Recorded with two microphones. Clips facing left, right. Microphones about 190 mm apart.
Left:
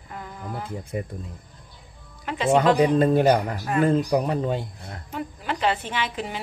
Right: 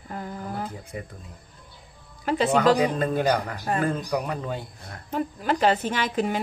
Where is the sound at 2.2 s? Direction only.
40° right (ahead or behind).